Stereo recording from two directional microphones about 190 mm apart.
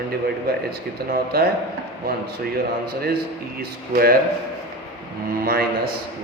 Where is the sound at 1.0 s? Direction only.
55° right (ahead or behind).